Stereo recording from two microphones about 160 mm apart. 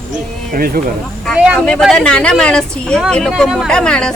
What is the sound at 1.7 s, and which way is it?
Speech, centre (ahead or behind).